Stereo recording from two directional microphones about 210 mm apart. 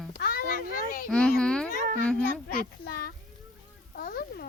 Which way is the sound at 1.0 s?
5° left (ahead or behind).